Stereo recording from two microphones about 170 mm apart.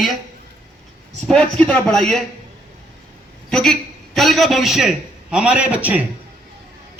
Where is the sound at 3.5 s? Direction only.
5° left (ahead or behind).